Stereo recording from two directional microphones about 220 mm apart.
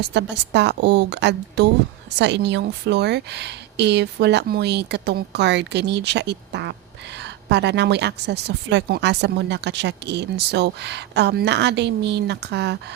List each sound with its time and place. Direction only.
0.0 s speech: 50° right (ahead or behind)